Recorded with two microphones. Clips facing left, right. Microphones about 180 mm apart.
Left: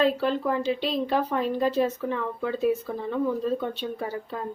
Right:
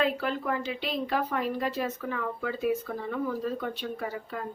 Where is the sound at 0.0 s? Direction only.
30° left (ahead or behind).